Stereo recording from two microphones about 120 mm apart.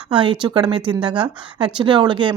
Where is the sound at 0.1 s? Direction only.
40° right (ahead or behind).